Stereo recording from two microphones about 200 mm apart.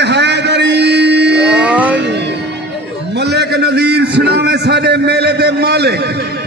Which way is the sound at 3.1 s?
55° right (ahead or behind).